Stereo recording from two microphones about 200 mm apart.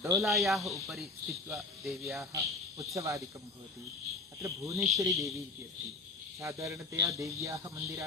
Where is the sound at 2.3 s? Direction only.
15° right (ahead or behind).